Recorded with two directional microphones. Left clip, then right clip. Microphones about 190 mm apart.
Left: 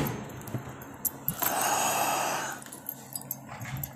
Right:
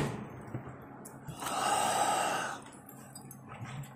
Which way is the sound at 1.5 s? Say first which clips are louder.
Left 2 dB; 15° right (ahead or behind).